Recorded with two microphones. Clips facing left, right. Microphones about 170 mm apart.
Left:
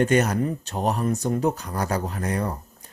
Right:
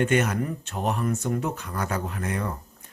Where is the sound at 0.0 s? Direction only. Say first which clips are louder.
Left 3 dB; 40° left (ahead or behind).